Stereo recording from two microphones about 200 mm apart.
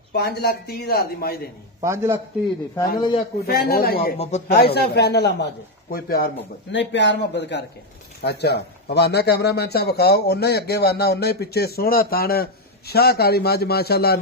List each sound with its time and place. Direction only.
0.1 s a man's voice: 55° left (ahead or behind)
1.8 s a man's voice: 15° right (ahead or behind)
3.0 s a man's voice: 25° left (ahead or behind)
3.4 s a man's voice: 50° left (ahead or behind)
4.2 s speech: 35° left (ahead or behind)
4.6 s a man's voice: 50° left (ahead or behind)
6.7 s a man's voice: 65° left (ahead or behind)